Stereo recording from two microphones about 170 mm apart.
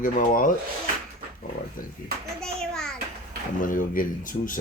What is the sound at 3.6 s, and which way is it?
Speech, 50° left (ahead or behind).